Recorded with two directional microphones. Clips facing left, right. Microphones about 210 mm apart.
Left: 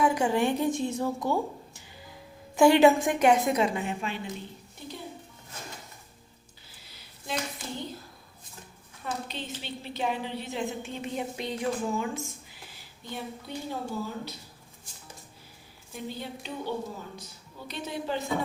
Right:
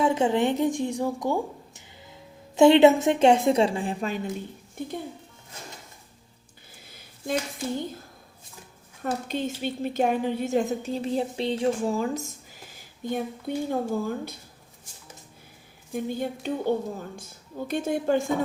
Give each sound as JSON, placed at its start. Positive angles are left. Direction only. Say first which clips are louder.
{"t": 0.0, "sound": "a woman's voice", "louder": "right 3 dB", "side_deg": -25}
{"t": 6.8, "sound": "a sound", "louder": "right 7 dB", "side_deg": -50}
{"t": 9.0, "sound": "a woman's voice", "louder": "right 7 dB", "side_deg": -50}
{"t": 15.9, "sound": "a woman's voice", "louder": "right 8 dB", "side_deg": -50}